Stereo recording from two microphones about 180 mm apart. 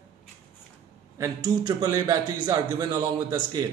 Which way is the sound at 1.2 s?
20° right (ahead or behind).